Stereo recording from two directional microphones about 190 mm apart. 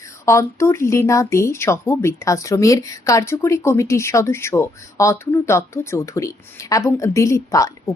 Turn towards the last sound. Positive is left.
turn(degrees=15)  # may be behind; listen again after turning